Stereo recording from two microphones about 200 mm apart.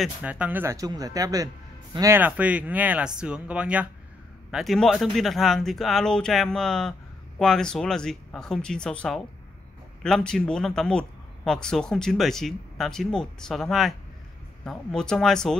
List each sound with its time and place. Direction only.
0.0 s speech: 5° right (ahead or behind)